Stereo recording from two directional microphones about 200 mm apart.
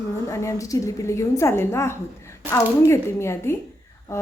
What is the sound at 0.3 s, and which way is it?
A woman's voice, 15° left (ahead or behind).